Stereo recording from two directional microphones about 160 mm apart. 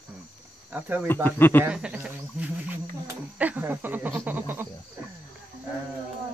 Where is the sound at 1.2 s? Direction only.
10° left (ahead or behind).